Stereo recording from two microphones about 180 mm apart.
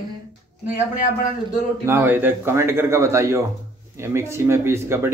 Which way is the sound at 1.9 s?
10° right (ahead or behind).